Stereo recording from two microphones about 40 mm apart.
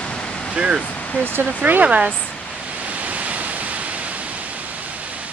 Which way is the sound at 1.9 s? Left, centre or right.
Right.